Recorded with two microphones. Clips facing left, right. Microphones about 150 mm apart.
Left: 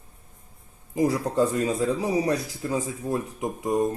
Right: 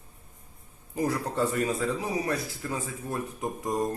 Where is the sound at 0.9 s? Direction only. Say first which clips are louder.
Left 5 dB; 15° left (ahead or behind).